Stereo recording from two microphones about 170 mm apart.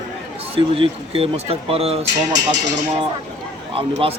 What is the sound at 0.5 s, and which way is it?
Speech, 35° right (ahead or behind).